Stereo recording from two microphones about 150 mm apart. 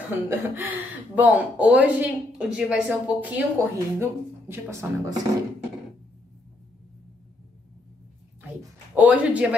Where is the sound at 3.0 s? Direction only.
10° right (ahead or behind).